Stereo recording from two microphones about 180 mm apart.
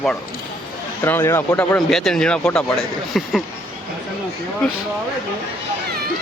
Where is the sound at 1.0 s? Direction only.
15° left (ahead or behind).